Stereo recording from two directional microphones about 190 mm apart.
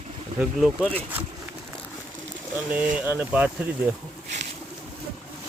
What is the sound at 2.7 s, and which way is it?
Speech, 10° right (ahead or behind).